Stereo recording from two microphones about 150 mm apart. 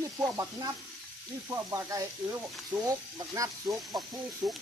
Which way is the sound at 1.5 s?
20° right (ahead or behind).